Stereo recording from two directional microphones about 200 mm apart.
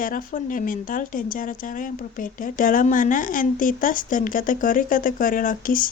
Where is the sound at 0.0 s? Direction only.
45° left (ahead or behind).